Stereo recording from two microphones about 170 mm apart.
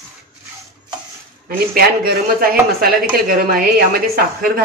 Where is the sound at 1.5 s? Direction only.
60° right (ahead or behind).